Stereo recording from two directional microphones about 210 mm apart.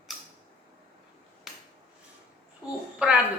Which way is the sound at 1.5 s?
Centre (ahead or behind).